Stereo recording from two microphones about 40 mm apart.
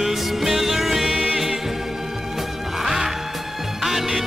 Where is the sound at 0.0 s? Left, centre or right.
Centre.